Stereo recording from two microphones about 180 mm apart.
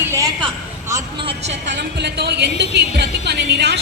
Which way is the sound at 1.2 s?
40° right (ahead or behind).